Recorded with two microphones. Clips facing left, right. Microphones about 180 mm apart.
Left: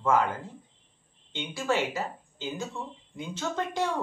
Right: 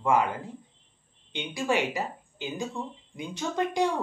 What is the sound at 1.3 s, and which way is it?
A woman's voice, 15° right (ahead or behind).